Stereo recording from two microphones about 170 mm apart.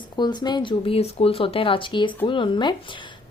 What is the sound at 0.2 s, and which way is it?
A woman's voice, 25° left (ahead or behind).